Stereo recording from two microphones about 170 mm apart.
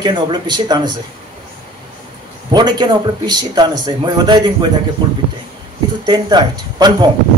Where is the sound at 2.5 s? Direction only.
25° right (ahead or behind).